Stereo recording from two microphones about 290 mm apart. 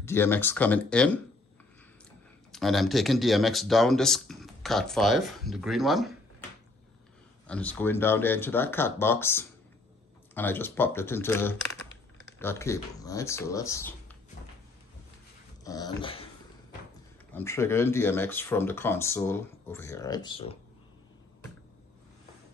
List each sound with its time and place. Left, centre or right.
0.0 s speech: centre
2.5 s speech: centre
7.4 s speech: centre
15.6 s speech: centre
17.3 s speech: centre